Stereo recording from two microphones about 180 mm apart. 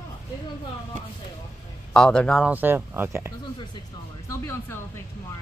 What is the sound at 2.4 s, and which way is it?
Speech, 10° right (ahead or behind).